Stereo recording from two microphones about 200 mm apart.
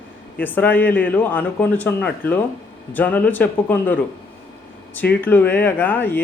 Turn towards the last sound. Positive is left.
turn(degrees=10)  # may be behind; listen again after turning